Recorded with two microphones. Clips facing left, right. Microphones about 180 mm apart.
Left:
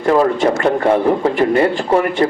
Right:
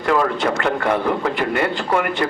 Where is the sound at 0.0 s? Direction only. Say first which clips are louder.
Left 5 dB; 30° left (ahead or behind).